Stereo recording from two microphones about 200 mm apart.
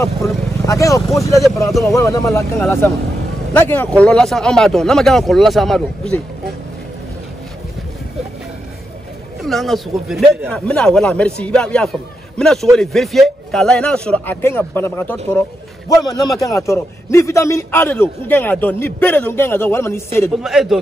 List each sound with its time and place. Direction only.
0.0 s a man's voice: 15° left (ahead or behind)
3.5 s a man's voice: 10° left (ahead or behind)
9.4 s a man's voice: centre (ahead or behind)
20.4 s a man's voice: centre (ahead or behind)